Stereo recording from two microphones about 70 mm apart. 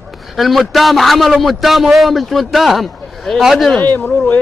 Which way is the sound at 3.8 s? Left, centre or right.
Left.